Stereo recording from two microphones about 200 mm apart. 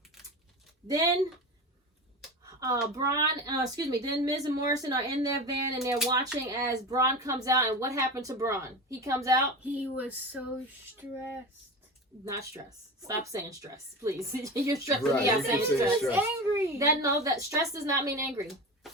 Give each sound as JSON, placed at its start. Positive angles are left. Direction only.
{"t": 2.5, "sound": "a sound", "side_deg": -15}
{"t": 2.9, "sound": "speech", "side_deg": -15}
{"t": 13.0, "sound": "speech", "side_deg": -15}